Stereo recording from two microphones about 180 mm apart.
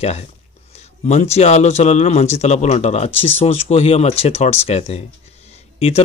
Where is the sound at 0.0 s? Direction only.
35° left (ahead or behind).